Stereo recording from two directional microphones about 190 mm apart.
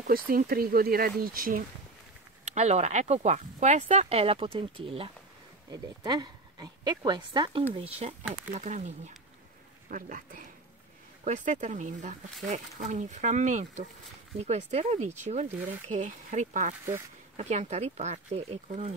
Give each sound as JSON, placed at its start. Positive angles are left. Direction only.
{"t": 0.3, "sound": "speech", "side_deg": -50}
{"t": 2.4, "sound": "speech", "side_deg": -35}